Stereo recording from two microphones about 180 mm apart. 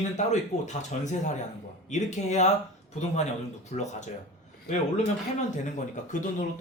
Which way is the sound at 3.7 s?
45° left (ahead or behind).